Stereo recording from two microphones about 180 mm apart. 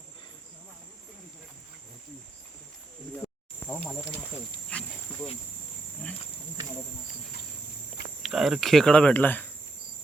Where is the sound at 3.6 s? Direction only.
10° left (ahead or behind).